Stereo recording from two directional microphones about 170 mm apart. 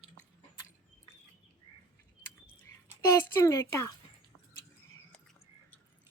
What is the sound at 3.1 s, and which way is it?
Speech, 15° left (ahead or behind).